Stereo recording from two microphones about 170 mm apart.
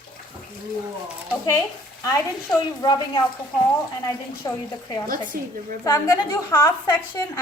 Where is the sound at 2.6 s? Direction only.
25° left (ahead or behind).